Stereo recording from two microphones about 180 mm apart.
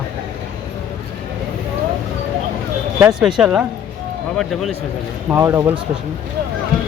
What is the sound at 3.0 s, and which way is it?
Speech, 5° right (ahead or behind).